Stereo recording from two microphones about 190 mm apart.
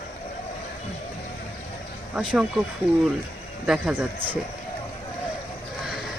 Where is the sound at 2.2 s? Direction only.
Centre (ahead or behind).